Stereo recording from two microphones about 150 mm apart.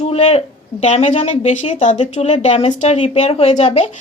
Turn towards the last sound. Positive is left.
turn(degrees=45)  # may be behind; listen again after turning